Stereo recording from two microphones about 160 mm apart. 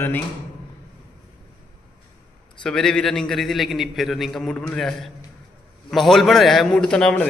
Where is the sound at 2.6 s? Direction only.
5° left (ahead or behind).